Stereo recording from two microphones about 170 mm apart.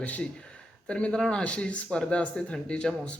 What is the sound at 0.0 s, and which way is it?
Speech, 10° left (ahead or behind).